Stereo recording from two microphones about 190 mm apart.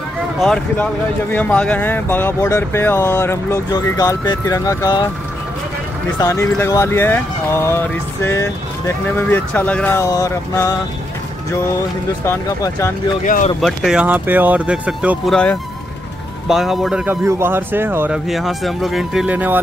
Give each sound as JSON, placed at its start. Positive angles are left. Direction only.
{"t": 0.4, "sound": "speech", "side_deg": 0}
{"t": 6.1, "sound": "speech", "side_deg": 15}
{"t": 12.3, "sound": "speech", "side_deg": 15}
{"t": 13.2, "sound": "speech", "side_deg": 40}
{"t": 13.6, "sound": "speech", "side_deg": 0}